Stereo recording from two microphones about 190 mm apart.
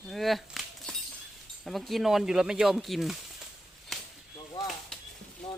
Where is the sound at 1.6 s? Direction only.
Centre (ahead or behind).